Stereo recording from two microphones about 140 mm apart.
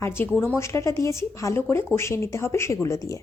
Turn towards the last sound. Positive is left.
turn(degrees=20)  # may be behind; listen again after turning